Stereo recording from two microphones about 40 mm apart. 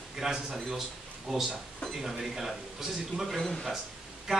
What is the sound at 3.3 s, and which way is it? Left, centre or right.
Speech, centre.